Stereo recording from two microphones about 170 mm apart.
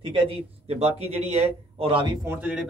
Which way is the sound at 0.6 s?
35° right (ahead or behind).